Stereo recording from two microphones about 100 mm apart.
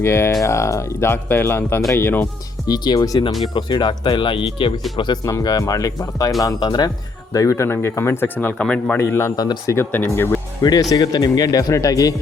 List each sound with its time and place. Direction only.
0.0 s speech: 25° left (ahead or behind)
2.6 s speech: 40° left (ahead or behind); by 4.7 s 60° left (ahead or behind)
4.9 s speech: 45° left (ahead or behind)
7.3 s speech: 30° left (ahead or behind); by 9.0 s 10° left (ahead or behind)
9.0 s speech: 25° left (ahead or behind)
9.3 s speech: 40° left (ahead or behind)
9.7 s speech: 20° left (ahead or behind)
10.6 s speech: 40° left (ahead or behind)